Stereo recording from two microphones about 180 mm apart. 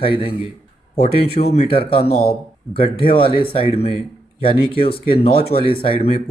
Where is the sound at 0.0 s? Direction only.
30° left (ahead or behind).